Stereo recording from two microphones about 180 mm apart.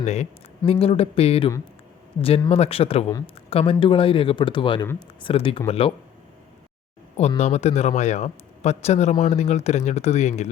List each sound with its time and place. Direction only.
0.0 s a man's voice: 40° left (ahead or behind)
7.2 s a man's voice: 40° left (ahead or behind)